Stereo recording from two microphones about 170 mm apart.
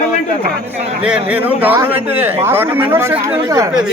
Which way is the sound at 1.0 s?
5° right (ahead or behind).